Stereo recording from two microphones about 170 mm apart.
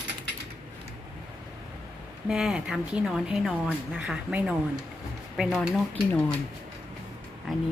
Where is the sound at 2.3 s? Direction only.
5° right (ahead or behind).